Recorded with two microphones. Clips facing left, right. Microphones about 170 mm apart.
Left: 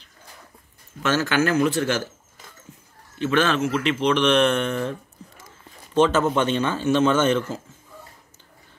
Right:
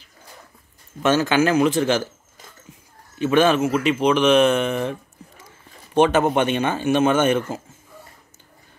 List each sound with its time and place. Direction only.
1.0 s speech: 15° right (ahead or behind)
3.2 s speech: 10° right (ahead or behind)
5.9 s speech: 60° right (ahead or behind)
7.5 s speech: 10° right (ahead or behind)